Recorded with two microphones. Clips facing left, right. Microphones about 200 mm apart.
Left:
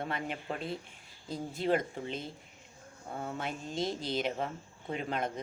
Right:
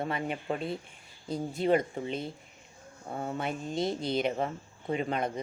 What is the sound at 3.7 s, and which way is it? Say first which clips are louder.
Speech: right 3 dB; 55° right (ahead or behind).